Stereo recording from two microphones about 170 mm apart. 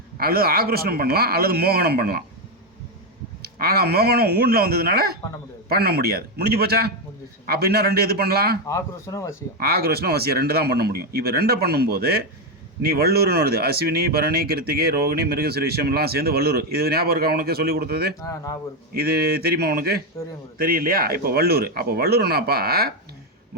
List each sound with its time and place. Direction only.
0.2 s speech: 65° right (ahead or behind)
3.4 s speech: 65° right (ahead or behind)
8.6 s speech: 20° left (ahead or behind)
9.6 s speech: 65° right (ahead or behind)
18.2 s speech: 20° left (ahead or behind)
18.9 s speech: 65° right (ahead or behind)